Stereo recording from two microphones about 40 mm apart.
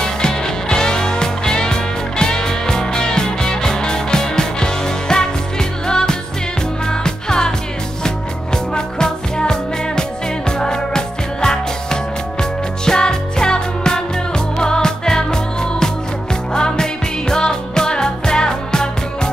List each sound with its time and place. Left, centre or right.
0.0 s music: centre
8.7 s music: centre